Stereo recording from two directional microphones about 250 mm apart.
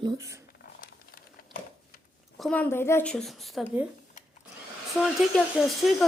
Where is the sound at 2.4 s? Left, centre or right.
Centre.